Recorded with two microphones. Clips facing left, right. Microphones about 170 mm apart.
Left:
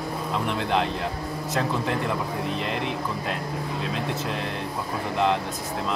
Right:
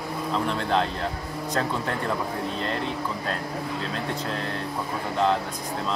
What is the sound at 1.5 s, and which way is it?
Speech, 10° left (ahead or behind).